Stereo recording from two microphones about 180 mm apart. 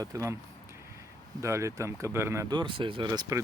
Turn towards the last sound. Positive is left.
turn(degrees=-20)  # may be behind; listen again after turning